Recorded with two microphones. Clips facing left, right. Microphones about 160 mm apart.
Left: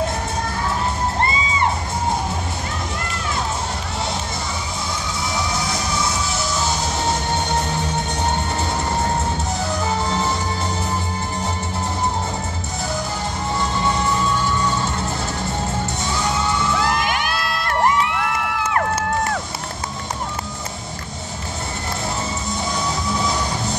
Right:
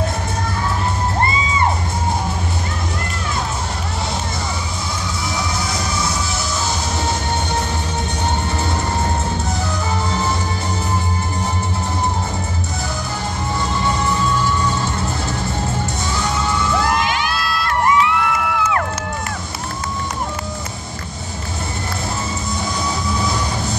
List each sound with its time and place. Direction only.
17.0 s crowd: 50° left (ahead or behind)